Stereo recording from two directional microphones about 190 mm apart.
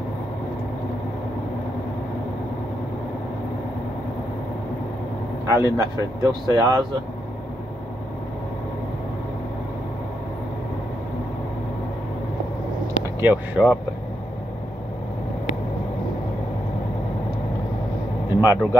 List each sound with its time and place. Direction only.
5.5 s speech: 15° right (ahead or behind)
13.2 s speech: 10° right (ahead or behind)
18.4 s speech: 10° right (ahead or behind)